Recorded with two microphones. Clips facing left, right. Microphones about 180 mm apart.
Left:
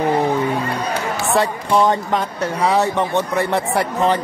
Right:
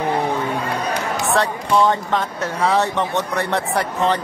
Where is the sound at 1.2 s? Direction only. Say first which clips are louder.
Left 2 dB; 15° left (ahead or behind).